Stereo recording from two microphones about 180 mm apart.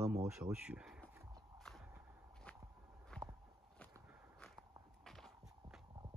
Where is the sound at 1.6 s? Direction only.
Centre (ahead or behind).